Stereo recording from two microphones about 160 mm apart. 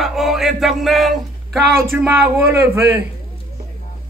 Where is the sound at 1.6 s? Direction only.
70° right (ahead or behind).